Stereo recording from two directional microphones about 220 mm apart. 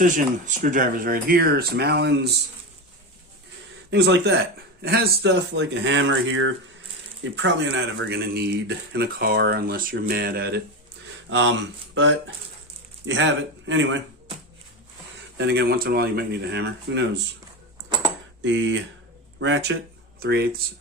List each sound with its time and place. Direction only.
0.0 s speech: 40° right (ahead or behind)
3.9 s speech: 50° right (ahead or behind)
13.1 s speech: 55° right (ahead or behind)
15.4 s speech: 50° right (ahead or behind)
17.8 s a sound: 20° right (ahead or behind)
18.4 s speech: 55° right (ahead or behind)